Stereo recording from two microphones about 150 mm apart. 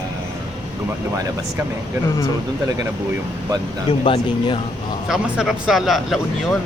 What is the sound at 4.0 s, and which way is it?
Speech, 35° left (ahead or behind).